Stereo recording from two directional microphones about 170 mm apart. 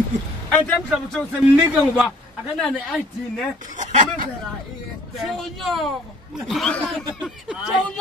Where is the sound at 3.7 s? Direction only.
45° right (ahead or behind).